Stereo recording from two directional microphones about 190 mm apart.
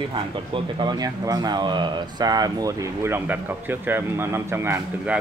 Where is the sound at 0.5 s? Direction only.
20° right (ahead or behind).